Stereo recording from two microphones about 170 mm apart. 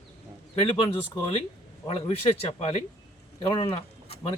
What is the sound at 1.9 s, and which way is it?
A man's voice, 35° left (ahead or behind).